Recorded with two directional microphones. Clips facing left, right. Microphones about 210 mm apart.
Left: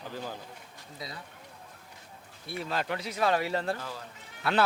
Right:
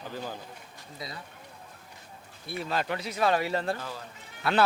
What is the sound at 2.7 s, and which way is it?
Speech, 15° right (ahead or behind).